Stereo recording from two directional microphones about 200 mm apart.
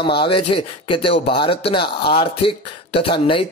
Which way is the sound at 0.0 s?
25° left (ahead or behind).